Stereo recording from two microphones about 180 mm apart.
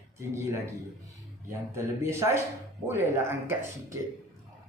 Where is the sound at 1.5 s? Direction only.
15° right (ahead or behind).